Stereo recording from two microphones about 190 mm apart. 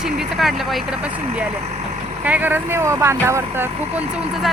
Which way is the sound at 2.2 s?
10° right (ahead or behind).